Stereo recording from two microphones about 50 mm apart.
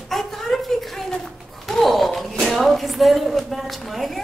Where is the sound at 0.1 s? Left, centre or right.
Centre.